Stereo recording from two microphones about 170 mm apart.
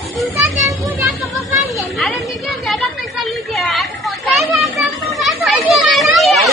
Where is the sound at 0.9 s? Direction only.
Centre (ahead or behind).